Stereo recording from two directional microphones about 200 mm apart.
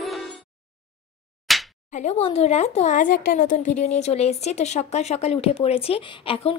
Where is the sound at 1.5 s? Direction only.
Centre (ahead or behind).